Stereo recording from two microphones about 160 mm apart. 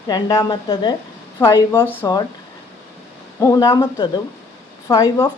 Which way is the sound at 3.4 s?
20° left (ahead or behind).